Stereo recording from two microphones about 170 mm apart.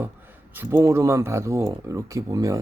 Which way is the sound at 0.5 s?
10° right (ahead or behind).